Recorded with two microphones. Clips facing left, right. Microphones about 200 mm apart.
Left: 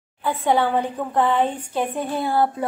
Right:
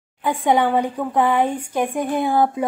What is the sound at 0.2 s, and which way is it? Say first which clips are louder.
A woman's voice: right 2 dB; 15° right (ahead or behind).